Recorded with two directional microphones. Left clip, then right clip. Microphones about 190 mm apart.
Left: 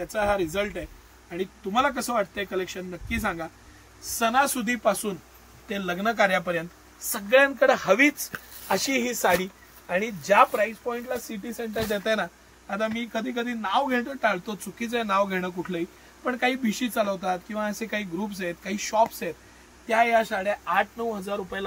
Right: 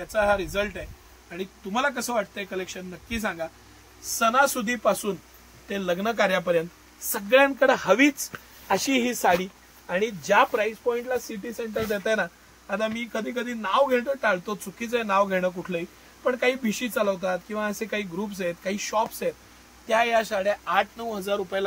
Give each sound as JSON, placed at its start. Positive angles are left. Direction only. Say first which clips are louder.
{"t": 0.1, "sound": "speech", "louder": "right 3 dB", "side_deg": -50}